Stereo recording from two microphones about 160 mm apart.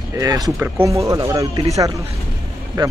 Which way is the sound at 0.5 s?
10° right (ahead or behind).